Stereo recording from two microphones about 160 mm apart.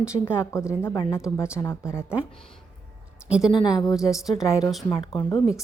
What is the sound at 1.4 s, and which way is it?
Speech, 15° left (ahead or behind).